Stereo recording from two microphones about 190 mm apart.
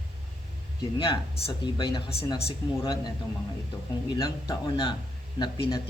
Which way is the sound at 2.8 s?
20° left (ahead or behind).